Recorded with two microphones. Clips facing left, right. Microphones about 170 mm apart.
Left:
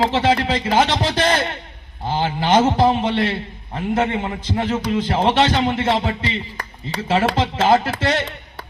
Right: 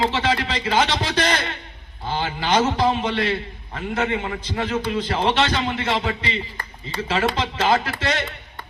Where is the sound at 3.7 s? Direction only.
30° left (ahead or behind).